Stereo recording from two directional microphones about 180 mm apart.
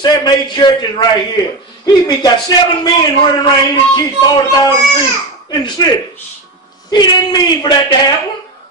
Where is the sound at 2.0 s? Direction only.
25° left (ahead or behind).